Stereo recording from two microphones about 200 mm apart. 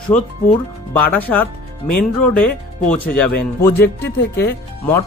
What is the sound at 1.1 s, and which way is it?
Speech, 10° left (ahead or behind).